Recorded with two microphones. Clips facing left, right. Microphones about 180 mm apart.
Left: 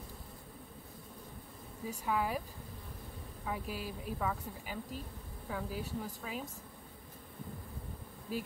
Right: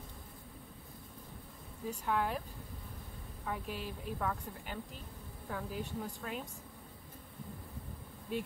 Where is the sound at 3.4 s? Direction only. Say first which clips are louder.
Left 1 dB; 5° left (ahead or behind).